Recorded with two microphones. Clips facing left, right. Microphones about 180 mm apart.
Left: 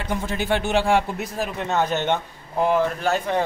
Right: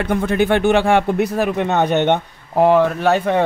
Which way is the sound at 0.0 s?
60° right (ahead or behind).